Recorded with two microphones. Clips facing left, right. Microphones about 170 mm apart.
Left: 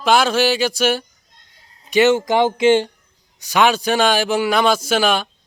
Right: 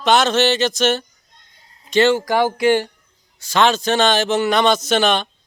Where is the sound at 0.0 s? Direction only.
5° left (ahead or behind).